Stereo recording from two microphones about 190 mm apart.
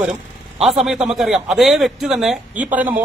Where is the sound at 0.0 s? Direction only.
5° right (ahead or behind).